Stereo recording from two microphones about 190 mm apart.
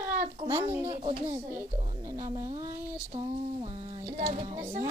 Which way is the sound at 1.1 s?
30° right (ahead or behind).